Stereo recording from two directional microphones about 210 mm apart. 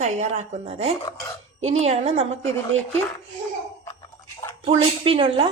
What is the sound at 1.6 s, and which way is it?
Speech, 30° right (ahead or behind).